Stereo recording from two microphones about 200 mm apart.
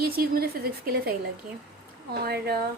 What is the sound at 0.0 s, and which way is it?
Speech, 50° right (ahead or behind).